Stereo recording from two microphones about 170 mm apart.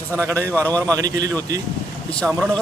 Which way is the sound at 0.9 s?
20° right (ahead or behind).